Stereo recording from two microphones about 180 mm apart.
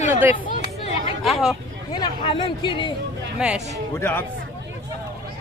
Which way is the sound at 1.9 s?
30° left (ahead or behind).